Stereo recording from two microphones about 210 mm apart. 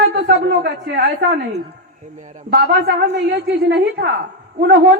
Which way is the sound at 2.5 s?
45° right (ahead or behind).